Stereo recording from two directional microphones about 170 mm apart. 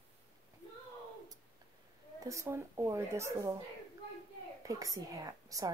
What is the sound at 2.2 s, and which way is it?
A woman's voice, 20° right (ahead or behind).